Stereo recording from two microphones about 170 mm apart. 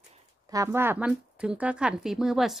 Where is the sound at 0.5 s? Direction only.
15° right (ahead or behind).